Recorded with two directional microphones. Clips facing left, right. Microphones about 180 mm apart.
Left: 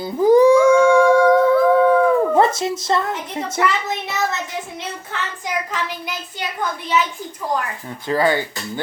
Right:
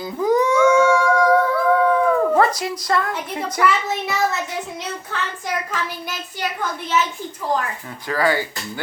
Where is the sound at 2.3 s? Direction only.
25° left (ahead or behind).